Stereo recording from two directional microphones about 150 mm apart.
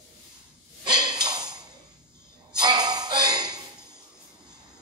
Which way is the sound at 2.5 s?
30° right (ahead or behind).